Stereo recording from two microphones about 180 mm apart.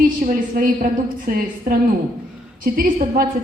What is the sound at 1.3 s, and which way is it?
A woman's voice, 55° right (ahead or behind).